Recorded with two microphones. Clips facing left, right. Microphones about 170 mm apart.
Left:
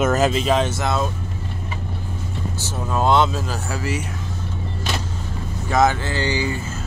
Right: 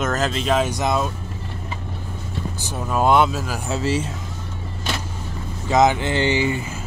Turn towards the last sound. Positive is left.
turn(degrees=-20)  # may be behind; listen again after turning